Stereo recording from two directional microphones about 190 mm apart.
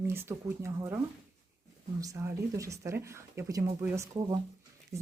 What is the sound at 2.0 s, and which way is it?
Speech, 15° right (ahead or behind).